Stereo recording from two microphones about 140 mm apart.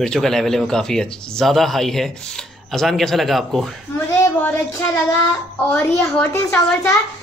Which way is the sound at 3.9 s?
20° left (ahead or behind).